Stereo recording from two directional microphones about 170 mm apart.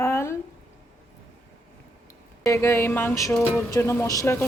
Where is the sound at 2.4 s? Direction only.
15° left (ahead or behind).